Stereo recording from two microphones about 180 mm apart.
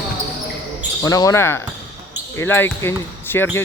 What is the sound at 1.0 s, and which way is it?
Speech, 20° left (ahead or behind).